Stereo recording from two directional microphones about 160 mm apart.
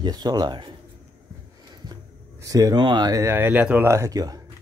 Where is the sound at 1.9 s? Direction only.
20° right (ahead or behind).